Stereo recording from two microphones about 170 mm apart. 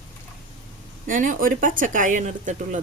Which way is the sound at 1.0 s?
50° right (ahead or behind).